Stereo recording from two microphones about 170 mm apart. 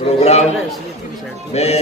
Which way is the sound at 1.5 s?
40° left (ahead or behind).